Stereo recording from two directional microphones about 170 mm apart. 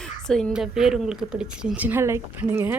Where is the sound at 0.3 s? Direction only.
5° left (ahead or behind).